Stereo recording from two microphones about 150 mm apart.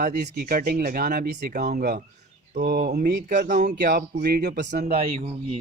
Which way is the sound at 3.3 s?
60° right (ahead or behind).